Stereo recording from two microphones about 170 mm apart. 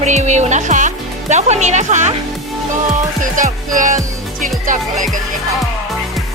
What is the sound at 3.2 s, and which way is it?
Speech, 50° right (ahead or behind).